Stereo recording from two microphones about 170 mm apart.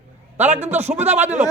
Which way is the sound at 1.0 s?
10° right (ahead or behind).